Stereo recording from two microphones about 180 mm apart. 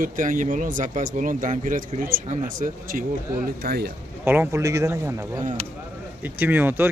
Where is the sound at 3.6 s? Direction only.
60° right (ahead or behind).